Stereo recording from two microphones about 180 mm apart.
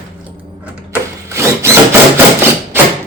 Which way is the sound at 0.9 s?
15° right (ahead or behind).